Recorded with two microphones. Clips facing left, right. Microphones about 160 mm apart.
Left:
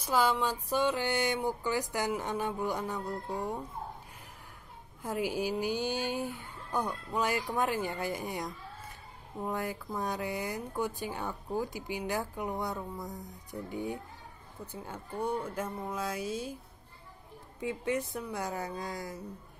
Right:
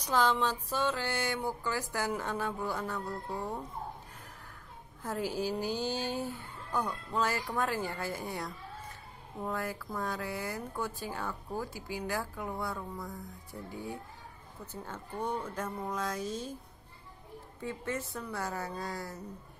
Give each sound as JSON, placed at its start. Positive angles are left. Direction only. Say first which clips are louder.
{"t": 0.0, "sound": "speech", "louder": "even", "side_deg": 10}
{"t": 5.0, "sound": "speech", "louder": "left 1 dB", "side_deg": 10}
{"t": 17.6, "sound": "speech", "louder": "left 4 dB", "side_deg": 15}